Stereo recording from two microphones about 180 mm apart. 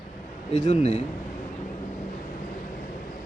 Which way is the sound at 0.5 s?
40° left (ahead or behind).